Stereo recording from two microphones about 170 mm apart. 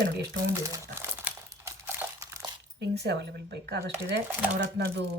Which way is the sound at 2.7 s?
75° right (ahead or behind).